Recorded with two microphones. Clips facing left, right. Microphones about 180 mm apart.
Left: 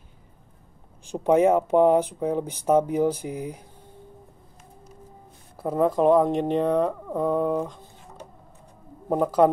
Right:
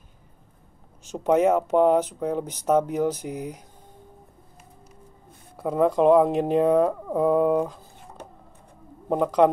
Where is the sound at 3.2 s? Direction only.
50° left (ahead or behind).